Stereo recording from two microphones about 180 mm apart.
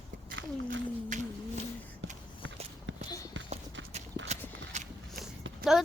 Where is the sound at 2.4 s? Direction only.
90° right.